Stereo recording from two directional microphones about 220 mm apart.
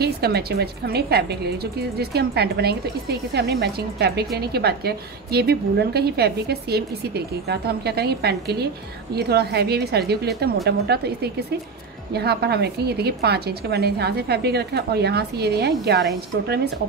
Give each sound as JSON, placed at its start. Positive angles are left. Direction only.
{"t": 0.0, "sound": "a woman's voice", "side_deg": -45}